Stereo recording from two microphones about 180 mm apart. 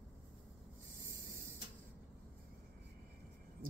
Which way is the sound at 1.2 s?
50° right (ahead or behind).